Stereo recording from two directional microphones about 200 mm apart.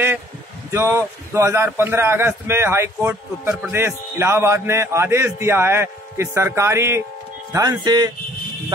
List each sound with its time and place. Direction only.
0.7 s a man's voice: 15° right (ahead or behind)